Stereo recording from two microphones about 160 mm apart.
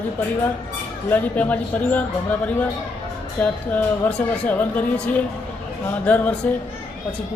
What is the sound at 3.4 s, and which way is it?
Speech, 10° left (ahead or behind).